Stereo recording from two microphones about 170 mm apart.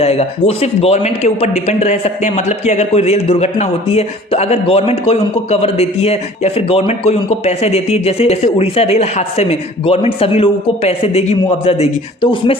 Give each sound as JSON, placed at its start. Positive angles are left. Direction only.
{"t": 0.0, "sound": "speech", "side_deg": 40}